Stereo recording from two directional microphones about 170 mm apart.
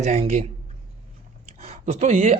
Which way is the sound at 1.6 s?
40° right (ahead or behind).